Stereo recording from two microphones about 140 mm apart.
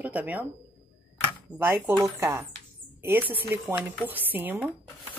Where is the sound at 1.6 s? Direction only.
15° right (ahead or behind).